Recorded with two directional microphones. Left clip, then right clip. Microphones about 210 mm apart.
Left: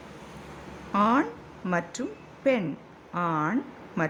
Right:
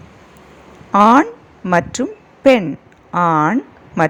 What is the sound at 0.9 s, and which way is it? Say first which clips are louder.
Speech: right 14 dB; 35° right (ahead or behind).